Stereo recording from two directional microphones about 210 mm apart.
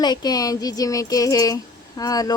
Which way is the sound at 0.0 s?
20° left (ahead or behind).